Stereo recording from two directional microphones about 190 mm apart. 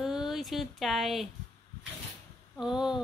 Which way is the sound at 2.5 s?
5° right (ahead or behind).